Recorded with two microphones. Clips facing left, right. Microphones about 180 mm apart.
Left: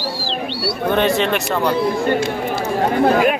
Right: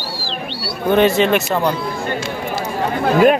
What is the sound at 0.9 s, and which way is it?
Speech, 5° right (ahead or behind).